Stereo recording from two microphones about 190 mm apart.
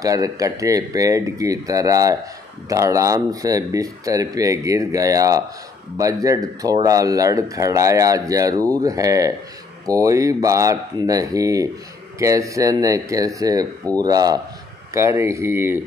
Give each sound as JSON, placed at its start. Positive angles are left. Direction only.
{"t": 0.0, "sound": "speech", "side_deg": -20}